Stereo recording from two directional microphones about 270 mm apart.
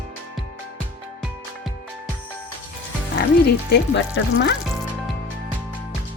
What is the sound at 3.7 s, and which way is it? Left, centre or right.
Speech, left.